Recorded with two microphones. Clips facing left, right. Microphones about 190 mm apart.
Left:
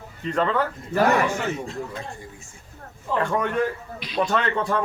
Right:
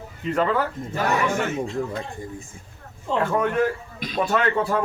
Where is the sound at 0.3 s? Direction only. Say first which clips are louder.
Right 1 dB; 5° right (ahead or behind).